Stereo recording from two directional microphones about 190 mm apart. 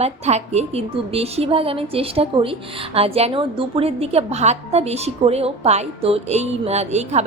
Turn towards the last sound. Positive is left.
turn(degrees=-35)  # may be behind; listen again after turning